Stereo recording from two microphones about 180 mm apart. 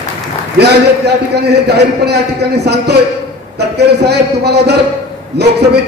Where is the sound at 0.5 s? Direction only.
65° right (ahead or behind).